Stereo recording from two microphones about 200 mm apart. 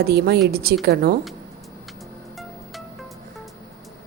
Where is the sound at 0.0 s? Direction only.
55° right (ahead or behind).